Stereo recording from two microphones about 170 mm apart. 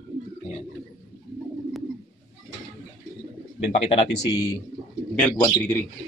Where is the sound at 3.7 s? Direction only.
35° left (ahead or behind).